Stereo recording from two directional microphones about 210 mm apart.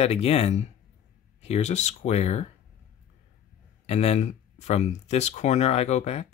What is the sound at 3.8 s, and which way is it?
Speech, 30° left (ahead or behind).